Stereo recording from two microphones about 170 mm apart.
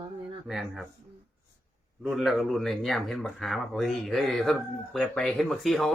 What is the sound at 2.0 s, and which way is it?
Speech, centre (ahead or behind).